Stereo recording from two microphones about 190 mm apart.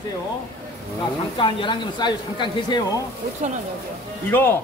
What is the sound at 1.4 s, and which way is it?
Speech, 25° left (ahead or behind).